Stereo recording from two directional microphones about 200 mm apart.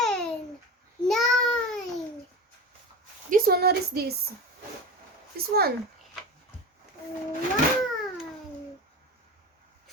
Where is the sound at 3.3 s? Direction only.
45° right (ahead or behind).